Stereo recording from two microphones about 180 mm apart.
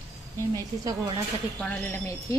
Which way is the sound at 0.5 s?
20° right (ahead or behind).